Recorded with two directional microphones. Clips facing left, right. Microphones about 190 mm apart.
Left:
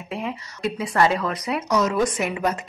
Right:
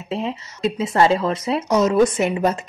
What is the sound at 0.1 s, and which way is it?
Speech, 25° right (ahead or behind).